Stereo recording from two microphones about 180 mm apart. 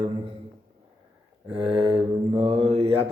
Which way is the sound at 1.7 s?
30° right (ahead or behind).